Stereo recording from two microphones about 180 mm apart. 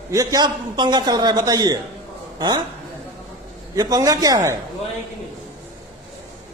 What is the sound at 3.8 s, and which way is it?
Speech, 20° right (ahead or behind).